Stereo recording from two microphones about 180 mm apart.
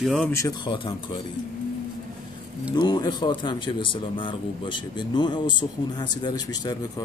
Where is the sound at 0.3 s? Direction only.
20° left (ahead or behind).